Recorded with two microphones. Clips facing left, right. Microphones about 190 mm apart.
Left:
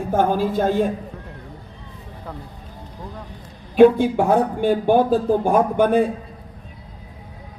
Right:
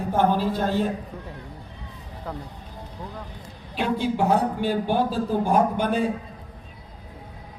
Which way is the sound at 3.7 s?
55° left (ahead or behind).